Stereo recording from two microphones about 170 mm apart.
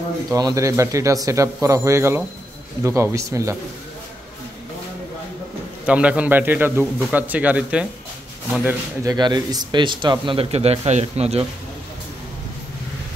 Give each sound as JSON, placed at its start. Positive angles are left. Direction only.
{"t": 0.3, "sound": "a man's voice", "side_deg": -20}
{"t": 5.9, "sound": "a man's voice", "side_deg": -5}
{"t": 8.6, "sound": "speech", "side_deg": -20}